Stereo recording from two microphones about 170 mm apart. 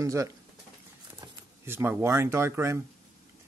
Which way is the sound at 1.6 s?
15° right (ahead or behind).